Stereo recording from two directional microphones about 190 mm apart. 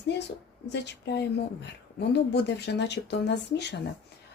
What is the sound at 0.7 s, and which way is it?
Speech, 65° left (ahead or behind).